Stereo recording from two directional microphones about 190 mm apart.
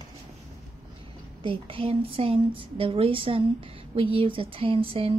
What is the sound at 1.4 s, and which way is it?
A woman's voice, 25° right (ahead or behind).